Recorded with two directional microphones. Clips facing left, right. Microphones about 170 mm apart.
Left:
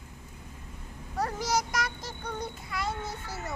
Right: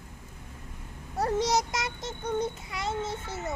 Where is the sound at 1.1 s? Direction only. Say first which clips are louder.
Right 3 dB; 25° right (ahead or behind).